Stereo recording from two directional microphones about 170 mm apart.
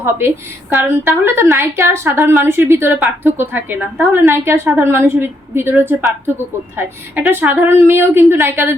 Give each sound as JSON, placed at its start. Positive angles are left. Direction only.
{"t": 0.0, "sound": "a woman's voice", "side_deg": -15}